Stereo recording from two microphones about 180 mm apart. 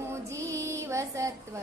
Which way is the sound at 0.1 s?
15° right (ahead or behind).